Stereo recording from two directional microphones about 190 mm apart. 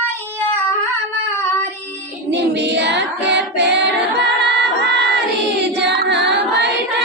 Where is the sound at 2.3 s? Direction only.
65° right (ahead or behind).